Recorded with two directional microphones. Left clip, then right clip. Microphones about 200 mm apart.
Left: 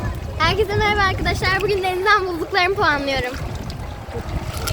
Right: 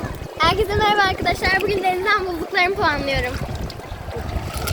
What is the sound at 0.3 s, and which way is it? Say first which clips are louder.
Speech: right 1 dB; 5° left (ahead or behind).